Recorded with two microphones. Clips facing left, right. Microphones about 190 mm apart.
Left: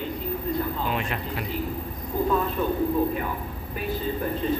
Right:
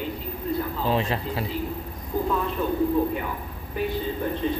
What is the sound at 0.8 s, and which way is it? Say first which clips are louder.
Speech: right 4 dB; 30° right (ahead or behind).